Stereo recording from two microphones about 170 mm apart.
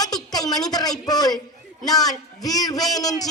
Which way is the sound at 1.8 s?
20° left (ahead or behind).